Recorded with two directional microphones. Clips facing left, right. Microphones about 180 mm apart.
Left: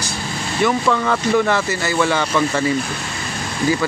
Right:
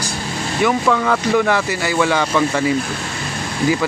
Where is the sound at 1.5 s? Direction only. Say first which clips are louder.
Right 1 dB; 10° right (ahead or behind).